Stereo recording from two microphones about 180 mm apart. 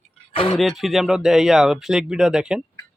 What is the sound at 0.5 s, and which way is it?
Speech, centre (ahead or behind).